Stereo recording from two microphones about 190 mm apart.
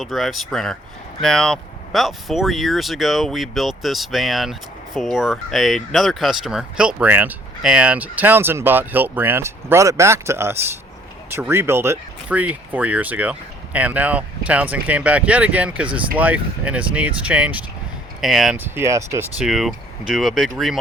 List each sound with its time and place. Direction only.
0.0 s speech: centre (ahead or behind)
19.5 s speech: centre (ahead or behind)